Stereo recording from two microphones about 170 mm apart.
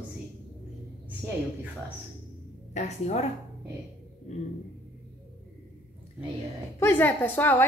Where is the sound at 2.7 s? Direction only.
40° left (ahead or behind).